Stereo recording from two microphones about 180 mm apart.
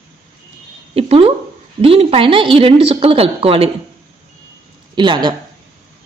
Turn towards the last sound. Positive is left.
turn(degrees=-25)  # may be behind; listen again after turning